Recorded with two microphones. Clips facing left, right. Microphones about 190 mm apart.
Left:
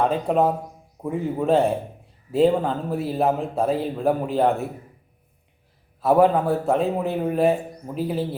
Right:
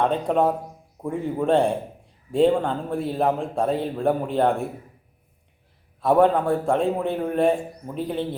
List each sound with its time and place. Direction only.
0.0 s a man's voice: 5° left (ahead or behind)
6.0 s a man's voice: 5° left (ahead or behind)